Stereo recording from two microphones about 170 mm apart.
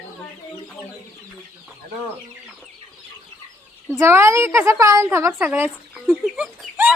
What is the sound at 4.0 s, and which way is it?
A woman's voice, 15° right (ahead or behind).